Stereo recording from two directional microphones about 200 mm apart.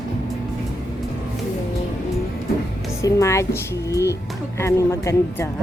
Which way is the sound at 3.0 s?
15° left (ahead or behind).